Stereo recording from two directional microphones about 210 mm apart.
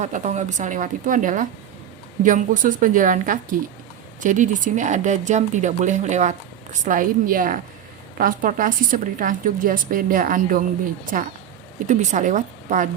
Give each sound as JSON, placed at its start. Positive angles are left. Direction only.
{"t": 0.0, "sound": "a woman's voice", "side_deg": -35}
{"t": 11.9, "sound": "a woman's voice", "side_deg": -35}